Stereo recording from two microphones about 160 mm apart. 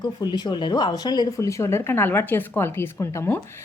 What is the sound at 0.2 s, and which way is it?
A woman's voice, 25° left (ahead or behind).